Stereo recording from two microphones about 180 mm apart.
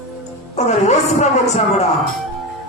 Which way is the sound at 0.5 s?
40° left (ahead or behind).